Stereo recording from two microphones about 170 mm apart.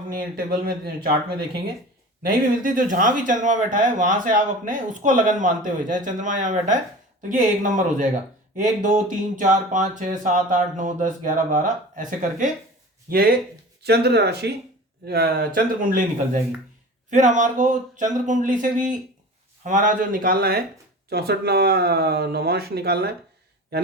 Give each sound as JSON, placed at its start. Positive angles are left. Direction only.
{"t": 0.1, "sound": "speech", "side_deg": -60}
{"t": 13.1, "sound": "speech", "side_deg": -60}
{"t": 13.8, "sound": "speech", "side_deg": -75}
{"t": 15.0, "sound": "speech", "side_deg": -65}